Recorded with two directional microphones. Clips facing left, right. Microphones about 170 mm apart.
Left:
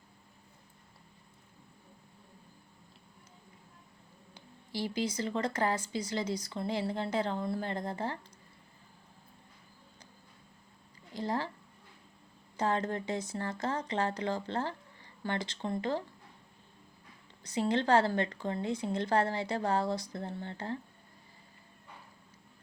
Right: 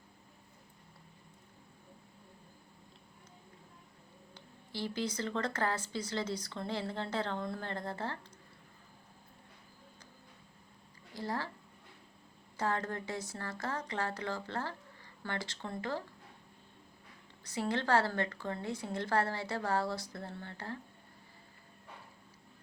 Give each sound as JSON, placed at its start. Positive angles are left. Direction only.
{"t": 4.4, "sound": "speech", "side_deg": 15}
{"t": 11.1, "sound": "a sound", "side_deg": 20}
{"t": 12.5, "sound": "a woman's voice", "side_deg": 20}
{"t": 17.4, "sound": "a woman's voice", "side_deg": 20}